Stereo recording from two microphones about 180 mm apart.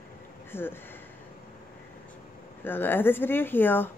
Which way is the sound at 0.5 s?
10° left (ahead or behind).